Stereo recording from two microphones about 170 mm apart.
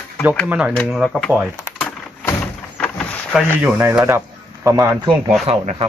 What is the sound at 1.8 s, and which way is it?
Vehicle, 5° left (ahead or behind).